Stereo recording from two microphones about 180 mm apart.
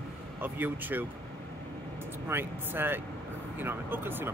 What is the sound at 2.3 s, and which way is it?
Speech, 10° right (ahead or behind).